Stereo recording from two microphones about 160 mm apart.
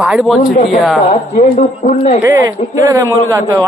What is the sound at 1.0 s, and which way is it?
A man's voice, 55° left (ahead or behind).